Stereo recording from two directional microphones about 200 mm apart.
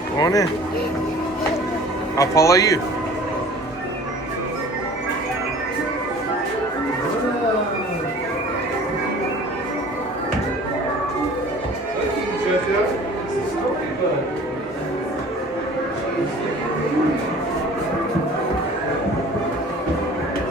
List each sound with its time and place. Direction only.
0.2 s speech: 20° left (ahead or behind)
2.1 s speech: 15° left (ahead or behind)